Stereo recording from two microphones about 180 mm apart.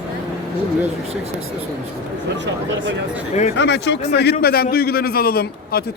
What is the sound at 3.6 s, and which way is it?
A man's voice, 75° left (ahead or behind).